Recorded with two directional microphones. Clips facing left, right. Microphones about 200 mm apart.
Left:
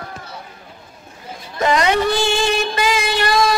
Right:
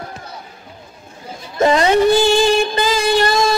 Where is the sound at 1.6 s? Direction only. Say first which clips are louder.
Right 4 dB; 30° right (ahead or behind).